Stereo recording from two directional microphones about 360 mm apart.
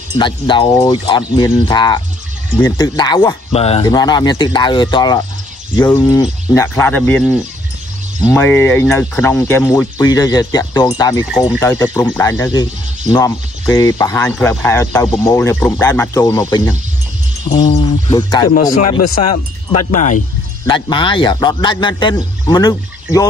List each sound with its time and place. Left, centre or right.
0.2 s speech: centre
18.9 s speech: left
19.9 s speech: left